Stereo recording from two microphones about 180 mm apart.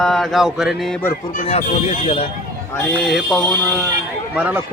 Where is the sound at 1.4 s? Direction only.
40° left (ahead or behind).